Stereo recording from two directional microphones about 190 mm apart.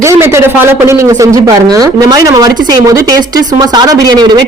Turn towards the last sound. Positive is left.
turn(degrees=-20)  # may be behind; listen again after turning